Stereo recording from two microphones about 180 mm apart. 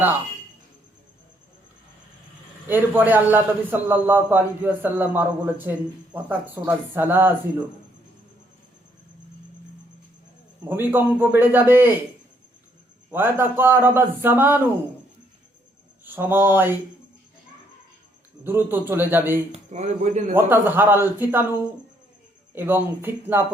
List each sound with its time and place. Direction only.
2.6 s a man's voice: 10° right (ahead or behind)
10.6 s a man's voice: 10° right (ahead or behind)
13.1 s a man's voice: 10° right (ahead or behind)
16.0 s a man's voice: 10° right (ahead or behind)
18.4 s a man's voice: 10° right (ahead or behind)
19.7 s speech: 40° right (ahead or behind)
20.3 s a man's voice: 10° right (ahead or behind)